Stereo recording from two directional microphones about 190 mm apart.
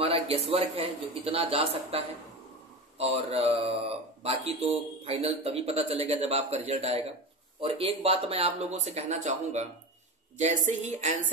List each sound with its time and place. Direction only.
0.0 s speech: 30° right (ahead or behind)